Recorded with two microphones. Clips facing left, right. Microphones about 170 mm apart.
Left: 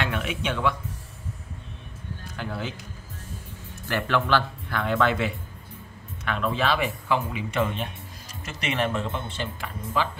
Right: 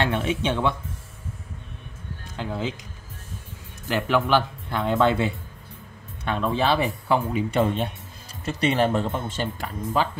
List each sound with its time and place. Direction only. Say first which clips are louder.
0.0 s speech: right 5 dB; 30° right (ahead or behind)
2.3 s speech: right 4 dB; 20° right (ahead or behind)
3.8 s speech: right 3 dB; 15° right (ahead or behind); by 10.0 s 40° right (ahead or behind)